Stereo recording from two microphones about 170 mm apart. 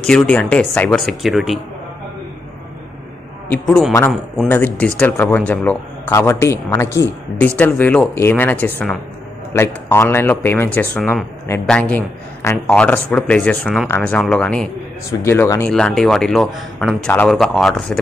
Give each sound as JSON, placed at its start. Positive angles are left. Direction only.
{"t": 0.0, "sound": "speech", "side_deg": 5}
{"t": 3.6, "sound": "a man's voice", "side_deg": 0}
{"t": 15.0, "sound": "a man's voice", "side_deg": 15}
{"t": 15.7, "sound": "speech", "side_deg": 5}